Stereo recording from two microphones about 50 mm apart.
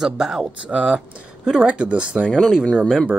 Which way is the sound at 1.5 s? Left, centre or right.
Right.